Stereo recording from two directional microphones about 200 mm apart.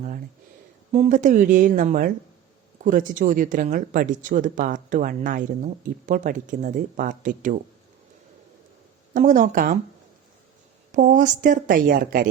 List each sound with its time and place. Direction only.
0.9 s speech: 35° right (ahead or behind)
9.1 s speech: 40° right (ahead or behind)
10.9 s speech: 40° right (ahead or behind)